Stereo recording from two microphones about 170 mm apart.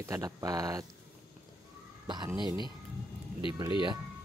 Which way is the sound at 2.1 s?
25° right (ahead or behind).